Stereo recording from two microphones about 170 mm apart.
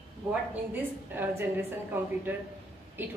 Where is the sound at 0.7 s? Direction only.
10° right (ahead or behind).